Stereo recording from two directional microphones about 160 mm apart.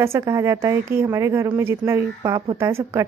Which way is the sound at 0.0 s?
15° right (ahead or behind).